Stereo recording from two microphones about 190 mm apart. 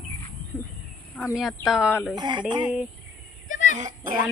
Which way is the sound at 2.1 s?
25° right (ahead or behind).